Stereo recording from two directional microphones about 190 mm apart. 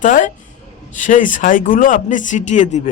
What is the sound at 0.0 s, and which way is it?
Speech, 45° left (ahead or behind).